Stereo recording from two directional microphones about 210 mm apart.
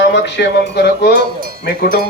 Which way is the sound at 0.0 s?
55° left (ahead or behind).